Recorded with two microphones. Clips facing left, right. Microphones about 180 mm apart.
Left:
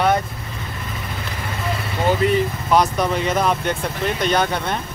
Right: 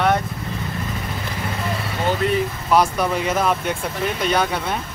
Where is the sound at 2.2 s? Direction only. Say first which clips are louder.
Left 2 dB; centre (ahead or behind).